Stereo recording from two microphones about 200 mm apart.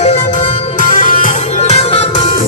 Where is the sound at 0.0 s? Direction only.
35° left (ahead or behind).